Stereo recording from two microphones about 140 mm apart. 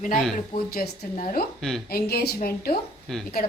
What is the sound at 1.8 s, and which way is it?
Speech, 90° left.